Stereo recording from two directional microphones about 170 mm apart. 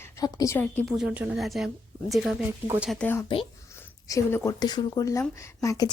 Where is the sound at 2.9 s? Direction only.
10° left (ahead or behind).